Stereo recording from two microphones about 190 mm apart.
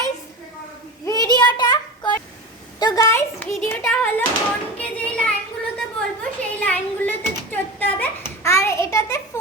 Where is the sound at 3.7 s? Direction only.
10° left (ahead or behind).